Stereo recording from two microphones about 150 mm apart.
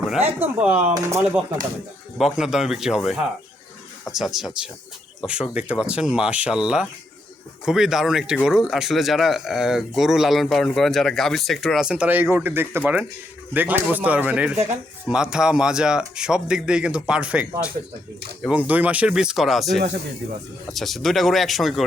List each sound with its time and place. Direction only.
0.2 s speech: 15° right (ahead or behind)
2.1 s speech: centre (ahead or behind)